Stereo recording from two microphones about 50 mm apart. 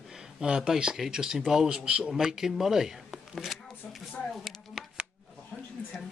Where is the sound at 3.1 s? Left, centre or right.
Centre.